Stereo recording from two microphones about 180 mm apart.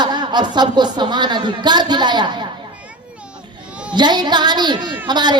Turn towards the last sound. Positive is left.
turn(degrees=-25)  # may be behind; listen again after turning